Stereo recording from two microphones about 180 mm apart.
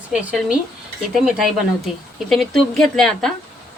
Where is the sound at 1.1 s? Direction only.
5° right (ahead or behind).